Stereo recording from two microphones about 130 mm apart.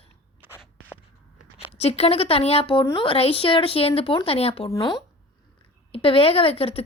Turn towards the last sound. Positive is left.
turn(degrees=50)  # may be behind; listen again after turning